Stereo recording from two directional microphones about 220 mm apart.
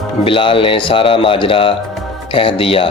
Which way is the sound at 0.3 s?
25° left (ahead or behind).